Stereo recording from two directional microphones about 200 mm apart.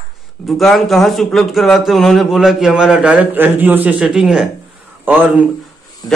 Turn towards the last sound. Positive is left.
turn(degrees=-5)  # may be behind; listen again after turning